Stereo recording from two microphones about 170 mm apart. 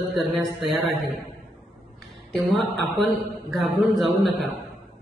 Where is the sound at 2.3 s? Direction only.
Centre (ahead or behind).